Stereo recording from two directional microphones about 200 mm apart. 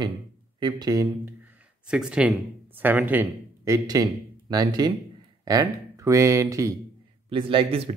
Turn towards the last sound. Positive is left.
turn(degrees=-30)  # may be behind; listen again after turning